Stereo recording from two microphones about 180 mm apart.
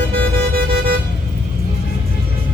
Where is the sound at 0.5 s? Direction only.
60° right (ahead or behind).